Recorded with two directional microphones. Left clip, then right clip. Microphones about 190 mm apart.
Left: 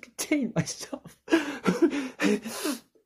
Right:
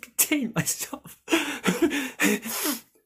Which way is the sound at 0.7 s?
25° right (ahead or behind).